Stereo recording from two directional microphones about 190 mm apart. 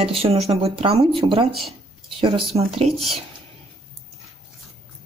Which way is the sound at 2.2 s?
30° right (ahead or behind).